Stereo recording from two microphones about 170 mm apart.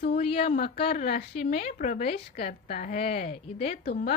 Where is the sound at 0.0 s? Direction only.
35° left (ahead or behind).